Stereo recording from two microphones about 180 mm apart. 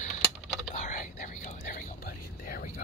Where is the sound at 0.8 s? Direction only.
45° left (ahead or behind).